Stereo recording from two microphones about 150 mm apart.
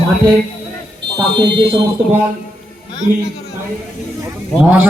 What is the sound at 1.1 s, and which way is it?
Speech, 35° right (ahead or behind).